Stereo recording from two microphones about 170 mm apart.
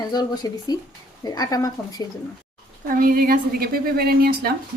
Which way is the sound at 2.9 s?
55° right (ahead or behind).